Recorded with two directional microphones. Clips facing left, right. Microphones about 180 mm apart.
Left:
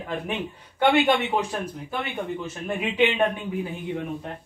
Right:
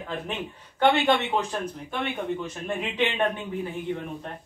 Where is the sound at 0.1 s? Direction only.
10° left (ahead or behind).